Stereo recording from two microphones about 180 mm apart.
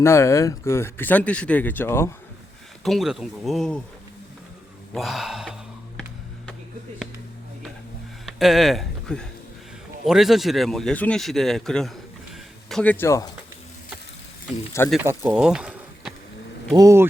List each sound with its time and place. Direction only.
0.0 s speech: 15° left (ahead or behind)
2.8 s speech: centre (ahead or behind)
4.9 s speech: centre (ahead or behind)
8.3 s speech: centre (ahead or behind); by 13.3 s 15° left (ahead or behind)
15.0 s speech: 15° right (ahead or behind)
15.4 s bee: 5° right (ahead or behind)
16.7 s speech: 15° right (ahead or behind)